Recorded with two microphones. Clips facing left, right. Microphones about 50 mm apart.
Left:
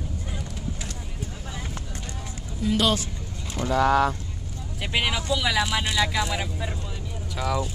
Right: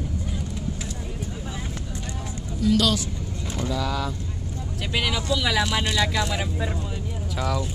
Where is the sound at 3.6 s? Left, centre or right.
Left.